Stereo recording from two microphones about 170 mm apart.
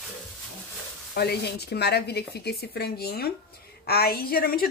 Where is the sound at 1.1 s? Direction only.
70° left (ahead or behind).